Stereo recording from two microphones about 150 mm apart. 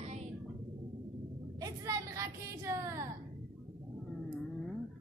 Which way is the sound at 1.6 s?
20° right (ahead or behind).